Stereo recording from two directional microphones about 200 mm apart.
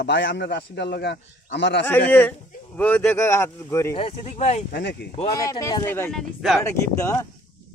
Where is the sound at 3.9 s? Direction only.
30° left (ahead or behind).